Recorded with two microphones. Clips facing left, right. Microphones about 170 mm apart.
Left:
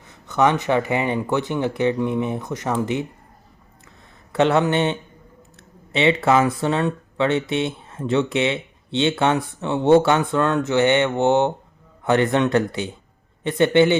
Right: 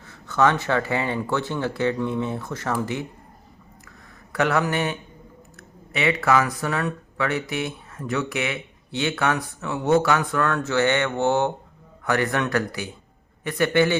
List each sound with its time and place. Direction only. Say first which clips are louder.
0.0 s speech: left 2 dB; 20° left (ahead or behind)
4.3 s speech: left 5 dB; 25° left (ahead or behind)